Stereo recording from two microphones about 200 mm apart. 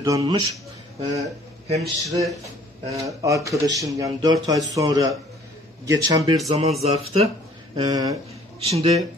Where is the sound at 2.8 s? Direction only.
15° right (ahead or behind).